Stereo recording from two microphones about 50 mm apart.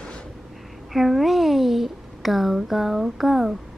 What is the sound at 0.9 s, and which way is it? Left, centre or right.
A child's voice, centre.